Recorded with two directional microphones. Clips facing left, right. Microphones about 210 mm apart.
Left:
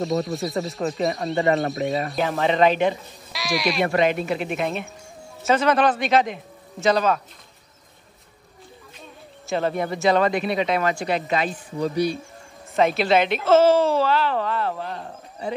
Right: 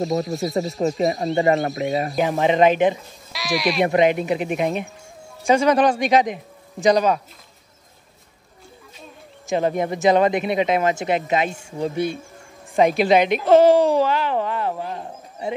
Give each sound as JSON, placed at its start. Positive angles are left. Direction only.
{"t": 0.0, "sound": "speech", "side_deg": 0}
{"t": 2.1, "sound": "speech", "side_deg": -15}
{"t": 3.3, "sound": "speech", "side_deg": 0}
{"t": 3.8, "sound": "speech", "side_deg": -20}
{"t": 9.5, "sound": "speech", "side_deg": -15}
{"t": 12.7, "sound": "speech", "side_deg": -15}